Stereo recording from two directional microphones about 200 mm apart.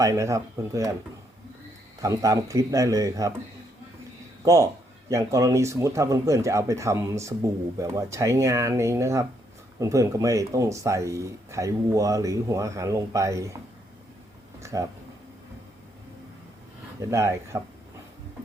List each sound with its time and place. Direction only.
0.0 s speech: 15° right (ahead or behind)
2.0 s speech: 15° right (ahead or behind)
4.4 s speech: 15° right (ahead or behind)
14.6 s a sound: 15° right (ahead or behind)
17.0 s speech: 15° right (ahead or behind)